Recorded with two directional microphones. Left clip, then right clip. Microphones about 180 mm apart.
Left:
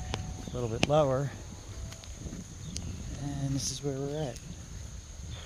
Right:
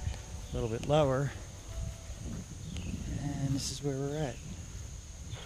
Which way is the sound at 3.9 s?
15° right (ahead or behind).